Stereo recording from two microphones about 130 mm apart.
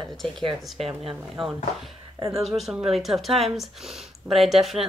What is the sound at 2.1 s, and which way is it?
Speech, 25° right (ahead or behind).